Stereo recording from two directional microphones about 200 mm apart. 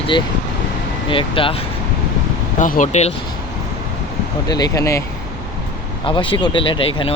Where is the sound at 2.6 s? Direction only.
40° left (ahead or behind).